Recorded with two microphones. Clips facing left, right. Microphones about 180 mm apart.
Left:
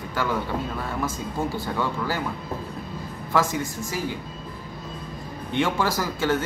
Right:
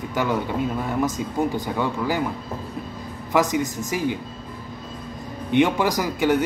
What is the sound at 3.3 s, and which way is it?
Speech, 15° right (ahead or behind).